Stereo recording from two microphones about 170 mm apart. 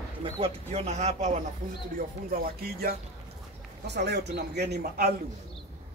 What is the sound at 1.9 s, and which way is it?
Speech, 60° right (ahead or behind).